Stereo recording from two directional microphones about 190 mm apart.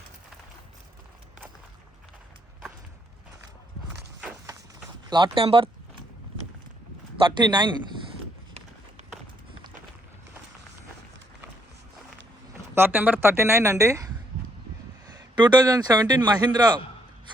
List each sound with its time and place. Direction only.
5.0 s a man's voice: 25° right (ahead or behind)
7.2 s a man's voice: 25° right (ahead or behind)
12.7 s speech: 10° right (ahead or behind)
15.4 s a man's voice: 25° right (ahead or behind)